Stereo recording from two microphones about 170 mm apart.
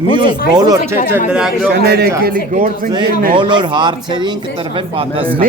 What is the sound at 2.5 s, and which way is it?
Speech, 50° right (ahead or behind).